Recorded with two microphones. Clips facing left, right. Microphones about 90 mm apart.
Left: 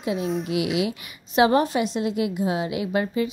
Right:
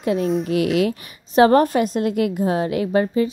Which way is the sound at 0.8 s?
45° right (ahead or behind).